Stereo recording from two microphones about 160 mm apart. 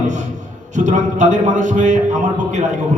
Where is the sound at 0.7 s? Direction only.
50° right (ahead or behind).